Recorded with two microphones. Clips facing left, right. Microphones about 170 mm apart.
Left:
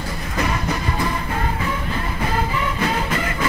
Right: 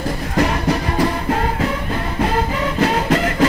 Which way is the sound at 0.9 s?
75° right (ahead or behind).